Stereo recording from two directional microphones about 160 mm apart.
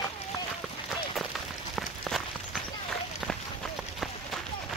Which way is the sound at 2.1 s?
Centre (ahead or behind).